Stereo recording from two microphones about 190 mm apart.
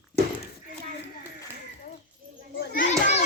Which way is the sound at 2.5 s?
45° left (ahead or behind).